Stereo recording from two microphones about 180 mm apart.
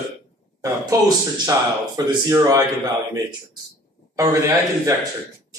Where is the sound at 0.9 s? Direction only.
20° right (ahead or behind).